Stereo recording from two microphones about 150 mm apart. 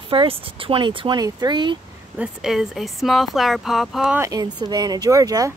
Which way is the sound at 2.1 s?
5° right (ahead or behind).